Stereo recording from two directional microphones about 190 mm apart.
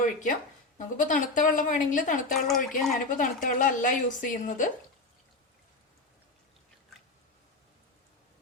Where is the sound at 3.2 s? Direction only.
45° left (ahead or behind).